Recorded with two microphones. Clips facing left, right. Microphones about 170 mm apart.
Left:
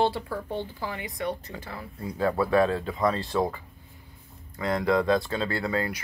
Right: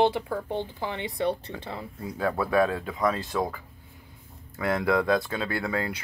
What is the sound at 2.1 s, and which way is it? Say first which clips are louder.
Speech: left 1 dB; centre (ahead or behind).